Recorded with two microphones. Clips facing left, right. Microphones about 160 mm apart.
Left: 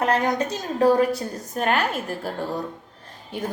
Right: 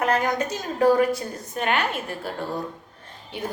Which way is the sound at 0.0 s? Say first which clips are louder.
Left 1 dB; 30° left (ahead or behind).